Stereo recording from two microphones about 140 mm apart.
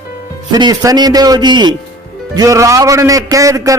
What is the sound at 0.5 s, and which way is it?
A man's voice, 30° right (ahead or behind).